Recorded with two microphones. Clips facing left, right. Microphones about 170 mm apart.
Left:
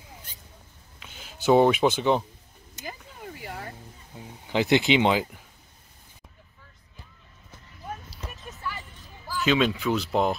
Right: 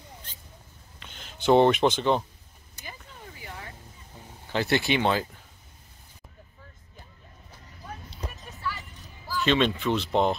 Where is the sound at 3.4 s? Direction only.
35° left (ahead or behind).